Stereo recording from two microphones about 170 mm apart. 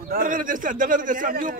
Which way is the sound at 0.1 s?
50° right (ahead or behind).